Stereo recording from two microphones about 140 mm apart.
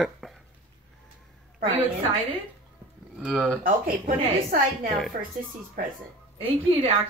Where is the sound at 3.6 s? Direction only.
90° right.